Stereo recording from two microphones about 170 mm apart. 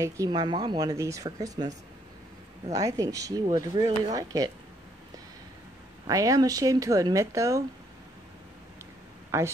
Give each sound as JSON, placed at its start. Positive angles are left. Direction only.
{"t": 0.0, "sound": "speech", "side_deg": -20}
{"t": 2.7, "sound": "speech", "side_deg": -20}
{"t": 6.0, "sound": "speech", "side_deg": -20}
{"t": 9.3, "sound": "speech", "side_deg": -15}